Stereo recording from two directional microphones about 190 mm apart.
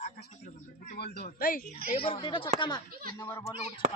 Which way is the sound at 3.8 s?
45° right (ahead or behind).